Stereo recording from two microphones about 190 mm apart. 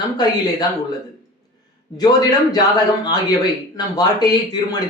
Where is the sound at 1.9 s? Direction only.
20° left (ahead or behind).